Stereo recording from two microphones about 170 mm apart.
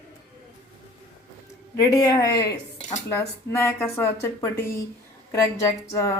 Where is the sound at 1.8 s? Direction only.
20° left (ahead or behind).